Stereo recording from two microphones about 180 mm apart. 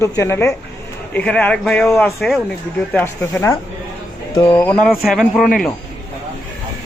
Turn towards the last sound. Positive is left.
turn(degrees=0)  # may be behind; listen again after turning